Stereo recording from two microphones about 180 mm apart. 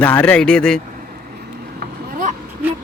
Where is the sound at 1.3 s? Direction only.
55° right (ahead or behind).